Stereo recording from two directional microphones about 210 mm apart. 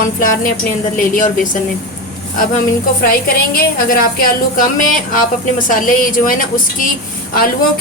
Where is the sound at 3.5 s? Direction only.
45° left (ahead or behind).